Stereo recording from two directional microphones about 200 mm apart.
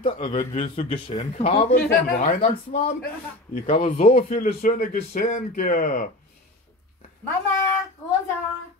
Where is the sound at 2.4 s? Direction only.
30° left (ahead or behind).